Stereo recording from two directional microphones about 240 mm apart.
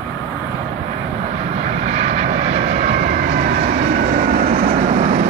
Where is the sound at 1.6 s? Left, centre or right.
Right.